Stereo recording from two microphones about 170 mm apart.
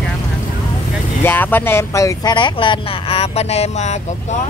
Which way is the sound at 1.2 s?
10° left (ahead or behind).